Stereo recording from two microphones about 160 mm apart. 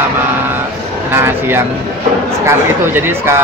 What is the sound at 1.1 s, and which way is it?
Speech, 15° right (ahead or behind).